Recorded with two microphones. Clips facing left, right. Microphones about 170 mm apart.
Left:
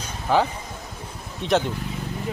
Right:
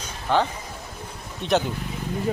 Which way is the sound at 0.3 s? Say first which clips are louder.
Left 1 dB; 5° left (ahead or behind).